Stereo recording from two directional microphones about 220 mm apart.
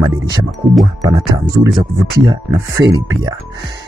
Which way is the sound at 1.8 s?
15° right (ahead or behind).